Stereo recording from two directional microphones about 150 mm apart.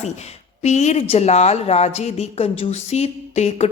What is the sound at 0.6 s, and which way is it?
A woman's voice, 50° left (ahead or behind).